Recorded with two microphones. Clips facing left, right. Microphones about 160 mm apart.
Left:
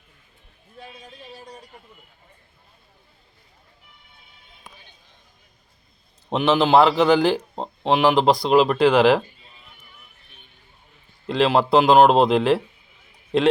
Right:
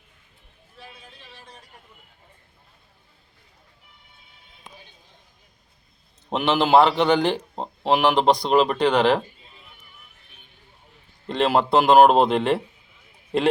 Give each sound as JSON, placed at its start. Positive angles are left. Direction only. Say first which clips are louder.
{"t": 1.2, "sound": "speech", "louder": "left 7 dB", "side_deg": 40}
{"t": 6.3, "sound": "a man's voice", "louder": "left 1 dB", "side_deg": 0}
{"t": 11.3, "sound": "a man's voice", "louder": "left 2 dB", "side_deg": 0}